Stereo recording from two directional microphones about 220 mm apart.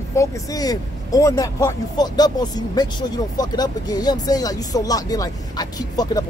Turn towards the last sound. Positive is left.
turn(degrees=15)  # may be behind; listen again after turning